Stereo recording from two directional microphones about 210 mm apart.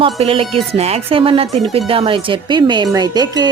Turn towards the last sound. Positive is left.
turn(degrees=-20)  # may be behind; listen again after turning